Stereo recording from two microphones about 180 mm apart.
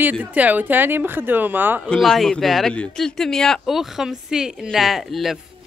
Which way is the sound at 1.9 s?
Centre (ahead or behind).